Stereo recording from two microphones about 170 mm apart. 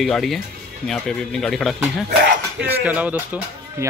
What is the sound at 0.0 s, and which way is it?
Speech, centre (ahead or behind).